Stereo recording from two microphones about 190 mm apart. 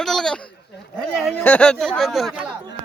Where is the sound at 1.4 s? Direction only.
10° left (ahead or behind).